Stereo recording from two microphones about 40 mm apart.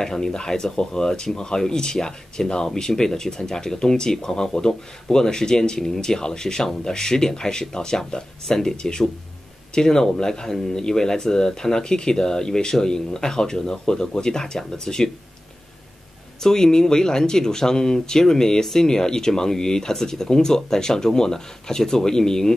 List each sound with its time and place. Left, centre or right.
0.0 s speech: centre
16.4 s speech: centre